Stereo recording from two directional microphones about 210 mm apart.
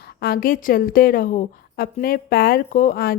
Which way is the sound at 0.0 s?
50° left (ahead or behind).